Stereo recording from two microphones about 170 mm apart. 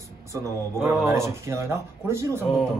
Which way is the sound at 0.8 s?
15° right (ahead or behind).